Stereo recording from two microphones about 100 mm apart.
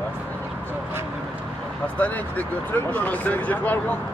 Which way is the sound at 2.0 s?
15° left (ahead or behind).